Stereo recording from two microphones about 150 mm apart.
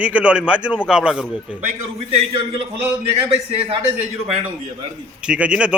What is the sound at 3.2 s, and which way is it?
Speech, 40° right (ahead or behind).